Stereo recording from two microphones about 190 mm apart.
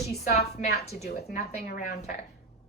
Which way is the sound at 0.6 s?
55° left (ahead or behind).